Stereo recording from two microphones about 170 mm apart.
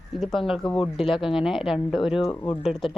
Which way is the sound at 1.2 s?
30° left (ahead or behind).